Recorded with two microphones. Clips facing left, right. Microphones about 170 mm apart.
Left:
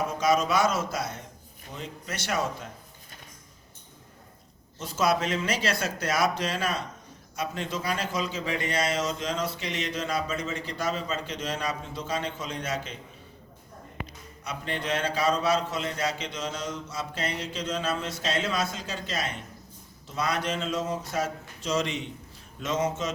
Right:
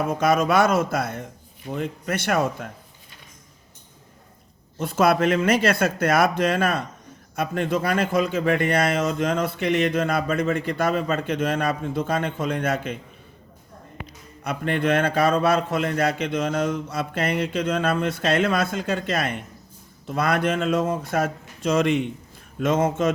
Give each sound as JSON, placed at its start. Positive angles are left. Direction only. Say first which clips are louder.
{"t": 0.1, "sound": "a man's voice", "louder": "right 5 dB", "side_deg": -55}
{"t": 4.8, "sound": "a man's voice", "louder": "right 7 dB", "side_deg": -60}
{"t": 14.4, "sound": "a man's voice", "louder": "right 9 dB", "side_deg": -55}